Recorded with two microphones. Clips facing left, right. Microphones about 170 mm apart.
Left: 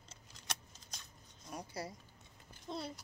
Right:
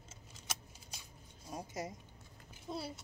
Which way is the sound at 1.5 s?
20° right (ahead or behind).